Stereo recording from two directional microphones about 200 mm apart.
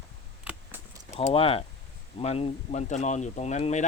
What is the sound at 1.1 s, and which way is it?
Speech, 30° left (ahead or behind).